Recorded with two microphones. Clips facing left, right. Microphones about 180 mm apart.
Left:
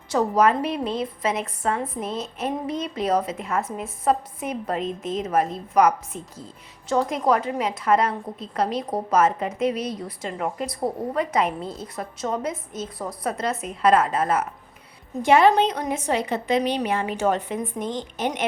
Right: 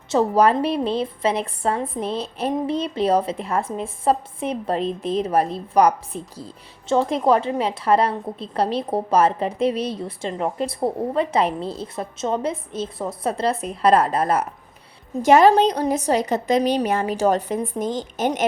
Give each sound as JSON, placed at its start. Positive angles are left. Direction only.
{"t": 0.1, "sound": "a woman's voice", "side_deg": -30}